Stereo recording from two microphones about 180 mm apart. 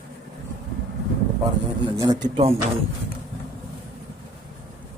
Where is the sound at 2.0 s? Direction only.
20° right (ahead or behind).